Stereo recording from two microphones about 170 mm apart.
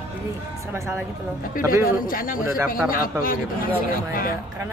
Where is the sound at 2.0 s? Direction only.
55° left (ahead or behind).